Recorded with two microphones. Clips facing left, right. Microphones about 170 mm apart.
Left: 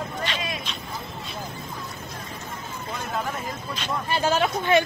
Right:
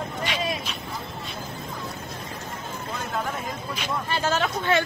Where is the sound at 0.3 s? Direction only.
10° right (ahead or behind).